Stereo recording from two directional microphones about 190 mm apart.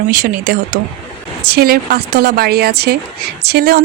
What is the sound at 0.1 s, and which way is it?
Speech, 45° right (ahead or behind).